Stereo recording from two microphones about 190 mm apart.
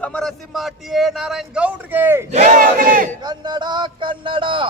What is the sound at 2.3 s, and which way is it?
Battle cry, 40° right (ahead or behind).